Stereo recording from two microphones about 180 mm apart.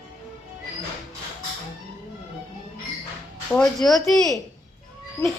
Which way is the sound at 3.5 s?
Centre (ahead or behind).